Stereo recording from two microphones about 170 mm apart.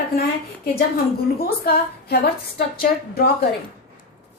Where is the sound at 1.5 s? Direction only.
70° left (ahead or behind).